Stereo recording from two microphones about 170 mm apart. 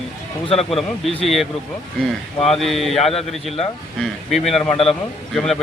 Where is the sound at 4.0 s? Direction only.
Centre (ahead or behind).